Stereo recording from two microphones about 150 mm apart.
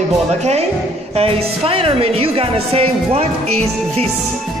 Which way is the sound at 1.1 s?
40° right (ahead or behind).